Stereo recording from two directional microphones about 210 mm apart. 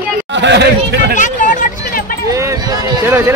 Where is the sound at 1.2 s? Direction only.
40° left (ahead or behind).